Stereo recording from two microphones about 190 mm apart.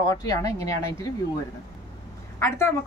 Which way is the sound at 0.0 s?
20° left (ahead or behind).